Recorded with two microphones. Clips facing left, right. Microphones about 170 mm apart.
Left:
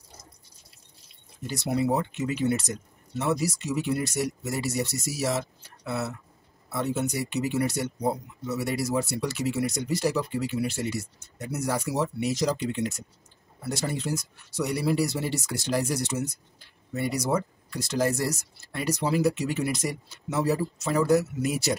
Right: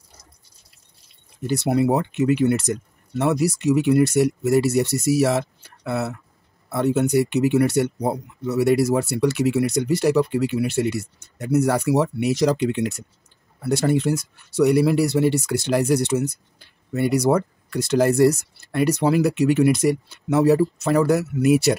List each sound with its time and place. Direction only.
1.5 s speech: 65° right (ahead or behind)